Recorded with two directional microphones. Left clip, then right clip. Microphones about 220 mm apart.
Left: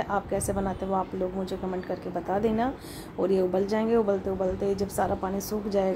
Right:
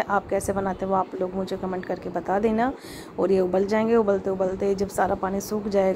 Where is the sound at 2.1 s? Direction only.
15° right (ahead or behind).